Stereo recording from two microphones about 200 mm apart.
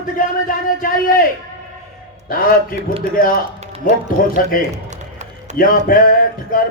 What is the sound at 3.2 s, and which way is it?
Speech, 45° left (ahead or behind).